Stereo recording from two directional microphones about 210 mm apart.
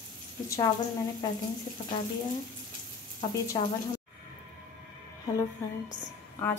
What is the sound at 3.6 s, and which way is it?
Frying, 25° left (ahead or behind).